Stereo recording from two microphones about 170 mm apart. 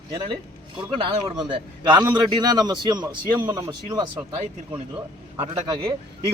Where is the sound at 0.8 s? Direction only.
30° right (ahead or behind).